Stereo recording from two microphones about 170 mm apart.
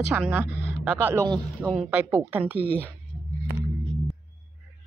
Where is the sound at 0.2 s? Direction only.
10° right (ahead or behind).